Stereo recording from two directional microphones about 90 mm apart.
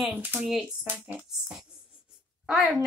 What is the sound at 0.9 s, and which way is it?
Speech, 20° right (ahead or behind).